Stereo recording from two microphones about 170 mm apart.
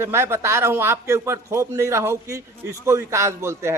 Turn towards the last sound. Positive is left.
turn(degrees=-15)  # may be behind; listen again after turning